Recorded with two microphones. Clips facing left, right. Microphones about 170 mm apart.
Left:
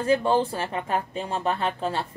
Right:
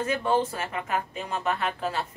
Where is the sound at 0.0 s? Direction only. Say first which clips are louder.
Left 4 dB; 30° left (ahead or behind).